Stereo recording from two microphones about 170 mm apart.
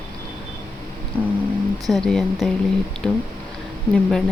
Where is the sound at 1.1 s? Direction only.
10° left (ahead or behind).